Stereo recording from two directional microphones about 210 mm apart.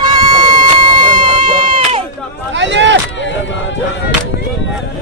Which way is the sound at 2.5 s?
60° right (ahead or behind).